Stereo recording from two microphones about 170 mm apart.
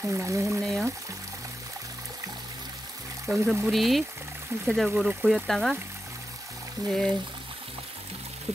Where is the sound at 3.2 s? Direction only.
Centre (ahead or behind).